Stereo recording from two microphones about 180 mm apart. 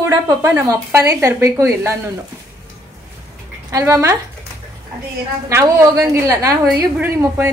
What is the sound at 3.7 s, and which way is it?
Speech, 15° right (ahead or behind).